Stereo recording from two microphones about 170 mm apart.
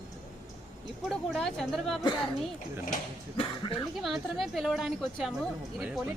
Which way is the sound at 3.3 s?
30° left (ahead or behind).